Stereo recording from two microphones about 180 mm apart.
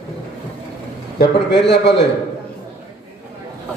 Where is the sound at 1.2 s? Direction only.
70° left (ahead or behind).